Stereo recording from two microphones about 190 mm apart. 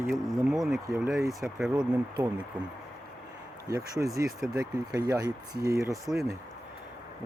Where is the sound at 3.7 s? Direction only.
15° right (ahead or behind).